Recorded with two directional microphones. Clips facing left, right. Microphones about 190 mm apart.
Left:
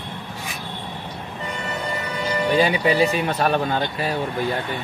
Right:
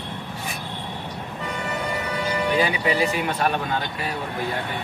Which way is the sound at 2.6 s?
30° left (ahead or behind).